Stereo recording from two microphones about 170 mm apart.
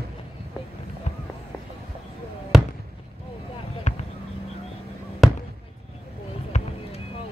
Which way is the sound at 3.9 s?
45° left (ahead or behind).